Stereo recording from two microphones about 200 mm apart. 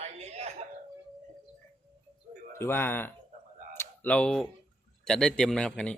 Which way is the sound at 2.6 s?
10° left (ahead or behind).